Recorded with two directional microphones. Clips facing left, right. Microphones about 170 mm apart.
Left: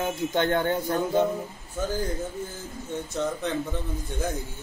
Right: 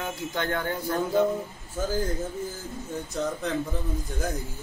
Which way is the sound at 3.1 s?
Centre (ahead or behind).